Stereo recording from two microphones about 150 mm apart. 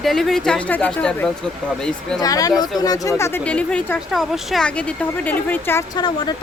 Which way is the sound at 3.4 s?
10° left (ahead or behind).